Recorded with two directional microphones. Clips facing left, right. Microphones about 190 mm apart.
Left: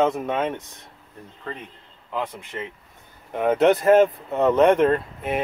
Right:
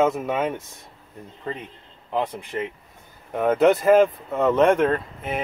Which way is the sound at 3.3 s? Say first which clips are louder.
Even; centre (ahead or behind).